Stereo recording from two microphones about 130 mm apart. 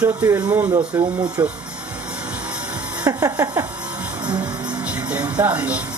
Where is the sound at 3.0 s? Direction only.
25° right (ahead or behind).